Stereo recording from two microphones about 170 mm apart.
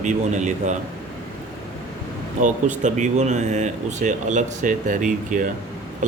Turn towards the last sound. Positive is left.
turn(degrees=-50)  # may be behind; listen again after turning